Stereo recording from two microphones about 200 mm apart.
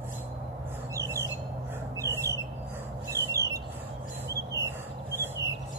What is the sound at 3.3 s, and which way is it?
Squawk, 15° right (ahead or behind).